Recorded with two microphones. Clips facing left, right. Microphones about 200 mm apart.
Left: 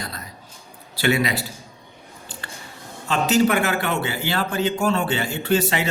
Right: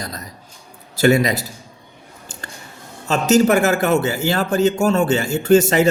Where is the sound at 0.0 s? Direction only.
40° right (ahead or behind).